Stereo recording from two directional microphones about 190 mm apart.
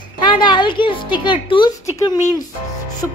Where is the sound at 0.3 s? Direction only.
25° left (ahead or behind).